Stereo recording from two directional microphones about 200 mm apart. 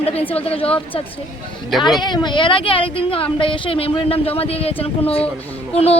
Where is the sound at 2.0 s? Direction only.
20° left (ahead or behind).